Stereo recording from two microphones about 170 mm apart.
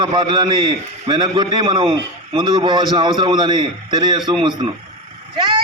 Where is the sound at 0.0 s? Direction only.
30° right (ahead or behind).